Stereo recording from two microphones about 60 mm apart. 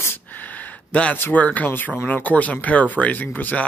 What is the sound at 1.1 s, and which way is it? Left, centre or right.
Speech, left.